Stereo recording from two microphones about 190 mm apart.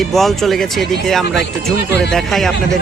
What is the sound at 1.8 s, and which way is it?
Speech, 65° left (ahead or behind).